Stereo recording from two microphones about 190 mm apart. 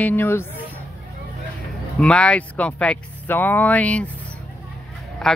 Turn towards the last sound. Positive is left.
turn(degrees=0)  # may be behind; listen again after turning